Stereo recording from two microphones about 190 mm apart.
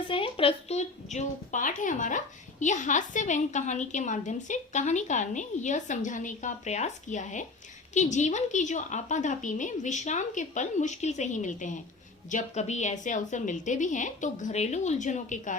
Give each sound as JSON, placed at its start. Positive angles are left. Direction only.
{"t": 0.1, "sound": "speech", "side_deg": 30}